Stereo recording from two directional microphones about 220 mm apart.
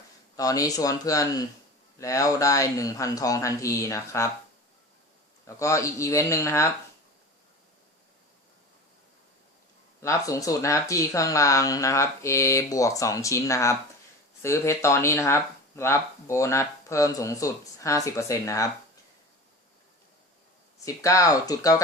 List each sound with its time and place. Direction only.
0.3 s speech: 15° left (ahead or behind)
5.5 s speech: 15° left (ahead or behind)
10.0 s speech: 15° left (ahead or behind)
20.8 s speech: 15° left (ahead or behind)